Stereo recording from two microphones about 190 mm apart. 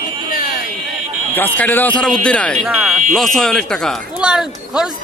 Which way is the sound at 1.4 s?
10° left (ahead or behind).